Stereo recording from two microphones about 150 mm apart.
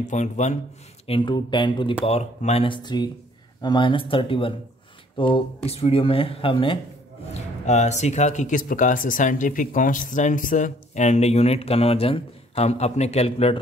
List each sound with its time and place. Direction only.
0.1 s speech: 50° left (ahead or behind)
1.0 s speech: 35° left (ahead or behind)
2.0 s speech: 45° left (ahead or behind)
7.3 s speech: 50° left (ahead or behind)